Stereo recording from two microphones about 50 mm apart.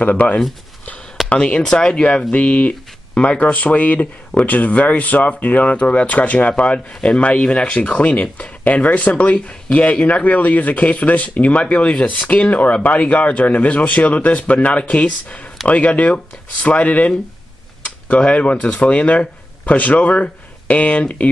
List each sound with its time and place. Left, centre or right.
0.0 s speech: left
1.6 s speech: centre